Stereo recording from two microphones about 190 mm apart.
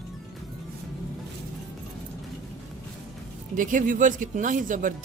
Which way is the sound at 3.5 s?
45° right (ahead or behind).